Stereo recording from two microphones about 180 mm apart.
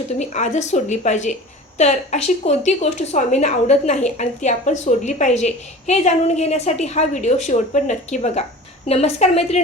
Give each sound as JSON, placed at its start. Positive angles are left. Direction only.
{"t": 0.2, "sound": "a woman's voice", "side_deg": 40}